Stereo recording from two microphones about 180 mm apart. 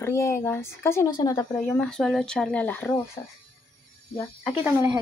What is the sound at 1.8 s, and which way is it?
Speech, centre (ahead or behind).